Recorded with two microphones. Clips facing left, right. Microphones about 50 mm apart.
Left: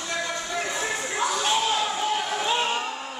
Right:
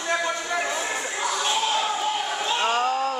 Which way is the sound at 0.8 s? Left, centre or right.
Centre.